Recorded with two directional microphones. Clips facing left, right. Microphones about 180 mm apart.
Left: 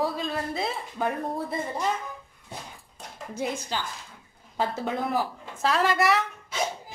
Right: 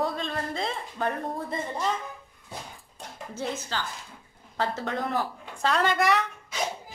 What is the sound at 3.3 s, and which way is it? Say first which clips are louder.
Speech: left 2 dB; 15° left (ahead or behind).